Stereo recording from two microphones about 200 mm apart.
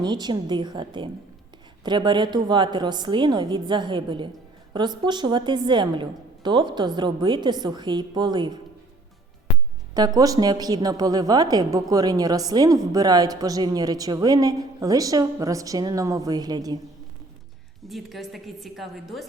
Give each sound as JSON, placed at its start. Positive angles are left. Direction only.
{"t": 0.0, "sound": "a woman's voice", "side_deg": -20}
{"t": 10.2, "sound": "a woman's voice", "side_deg": -20}
{"t": 17.8, "sound": "a woman's voice", "side_deg": 0}